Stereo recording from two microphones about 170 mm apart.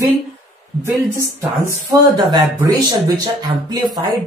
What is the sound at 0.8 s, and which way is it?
A woman's voice, 15° right (ahead or behind).